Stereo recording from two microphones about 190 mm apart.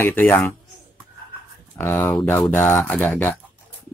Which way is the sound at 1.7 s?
10° left (ahead or behind).